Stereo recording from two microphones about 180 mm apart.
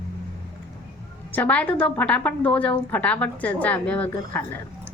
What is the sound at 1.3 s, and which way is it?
A woman's voice, 10° left (ahead or behind).